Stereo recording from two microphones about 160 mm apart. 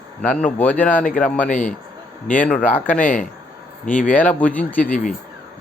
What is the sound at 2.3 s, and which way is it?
Speech, 10° left (ahead or behind).